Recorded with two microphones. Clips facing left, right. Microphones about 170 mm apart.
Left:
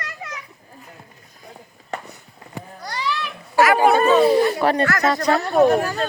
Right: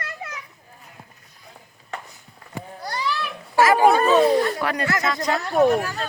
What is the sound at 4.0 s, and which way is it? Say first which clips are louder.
Chatter: left 2 dB; centre (ahead or behind).